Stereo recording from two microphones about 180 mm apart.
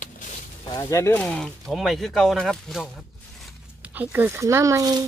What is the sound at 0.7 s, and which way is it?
Speech, 15° left (ahead or behind).